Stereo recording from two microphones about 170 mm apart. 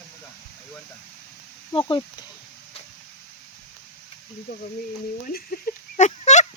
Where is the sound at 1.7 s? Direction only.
25° left (ahead or behind).